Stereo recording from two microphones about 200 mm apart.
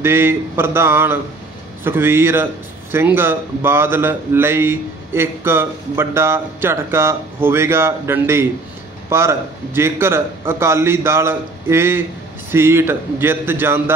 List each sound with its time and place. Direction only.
0.0 s a man's voice: 10° right (ahead or behind)